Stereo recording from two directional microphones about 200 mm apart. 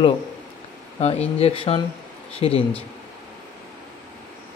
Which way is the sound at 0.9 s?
30° left (ahead or behind).